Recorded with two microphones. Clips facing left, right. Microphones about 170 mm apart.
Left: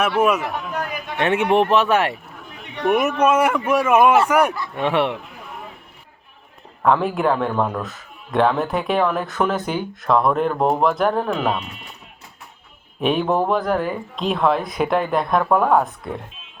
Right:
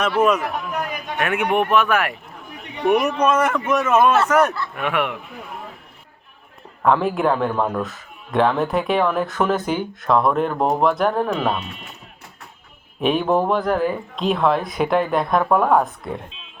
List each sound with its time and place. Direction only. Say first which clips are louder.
0.2 s a man's voice: right 2 dB; 10° left (ahead or behind)
1.2 s speech: left 3 dB; 30° left (ahead or behind)
2.8 s a man's voice: even; centre (ahead or behind)
4.7 s speech: left 3 dB; 30° left (ahead or behind)
6.8 s speech: even; centre (ahead or behind)
13.0 s speech: right 1 dB; centre (ahead or behind)